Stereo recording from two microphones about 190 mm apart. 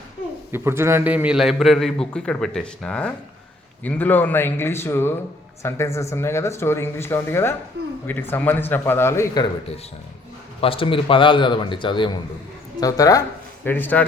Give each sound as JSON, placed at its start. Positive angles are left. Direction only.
{"t": 0.5, "sound": "a man's voice", "side_deg": -15}
{"t": 10.6, "sound": "a man's voice", "side_deg": 30}